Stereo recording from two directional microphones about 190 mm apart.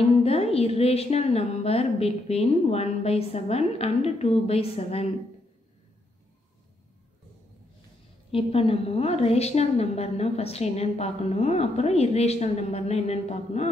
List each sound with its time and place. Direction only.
0.2 s a woman's voice: 30° left (ahead or behind)
8.3 s a woman's voice: 30° left (ahead or behind)